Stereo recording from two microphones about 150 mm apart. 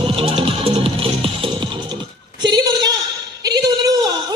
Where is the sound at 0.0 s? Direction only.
35° right (ahead or behind).